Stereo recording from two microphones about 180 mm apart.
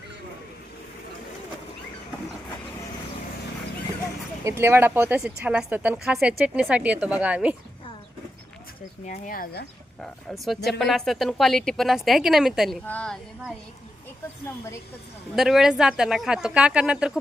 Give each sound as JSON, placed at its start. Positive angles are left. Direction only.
{"t": 4.4, "sound": "speech", "side_deg": -15}
{"t": 9.0, "sound": "speech", "side_deg": 50}
{"t": 10.0, "sound": "a woman's voice", "side_deg": 0}
{"t": 15.4, "sound": "speech", "side_deg": 0}